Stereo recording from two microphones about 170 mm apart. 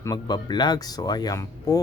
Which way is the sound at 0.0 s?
25° left (ahead or behind).